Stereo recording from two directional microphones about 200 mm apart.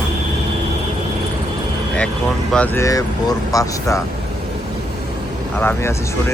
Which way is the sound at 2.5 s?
5° left (ahead or behind).